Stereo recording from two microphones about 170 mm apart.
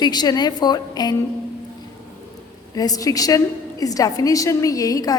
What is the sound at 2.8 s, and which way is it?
A woman's voice, 20° left (ahead or behind).